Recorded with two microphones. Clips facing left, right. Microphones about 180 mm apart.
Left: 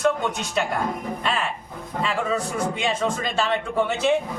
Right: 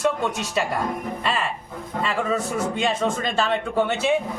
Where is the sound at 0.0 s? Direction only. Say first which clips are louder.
Left 1 dB; 5° right (ahead or behind).